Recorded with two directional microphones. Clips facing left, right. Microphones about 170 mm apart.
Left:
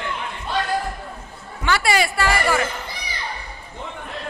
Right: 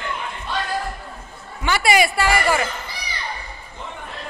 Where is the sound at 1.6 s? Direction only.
15° right (ahead or behind).